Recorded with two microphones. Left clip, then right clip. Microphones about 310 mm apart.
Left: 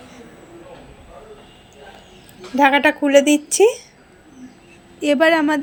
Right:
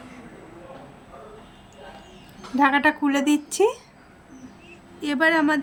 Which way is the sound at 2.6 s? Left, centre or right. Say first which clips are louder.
Left 5 dB; centre.